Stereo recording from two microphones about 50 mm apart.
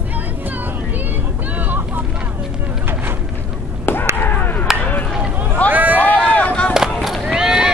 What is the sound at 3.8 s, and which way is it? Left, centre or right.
Chop, left.